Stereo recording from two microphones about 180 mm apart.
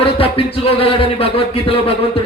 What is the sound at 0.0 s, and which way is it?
A man's voice, 30° left (ahead or behind).